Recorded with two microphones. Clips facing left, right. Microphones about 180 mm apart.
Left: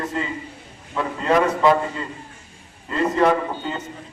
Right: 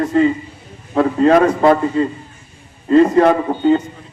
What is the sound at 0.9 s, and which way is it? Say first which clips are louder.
Speech: right 9 dB; 50° right (ahead or behind).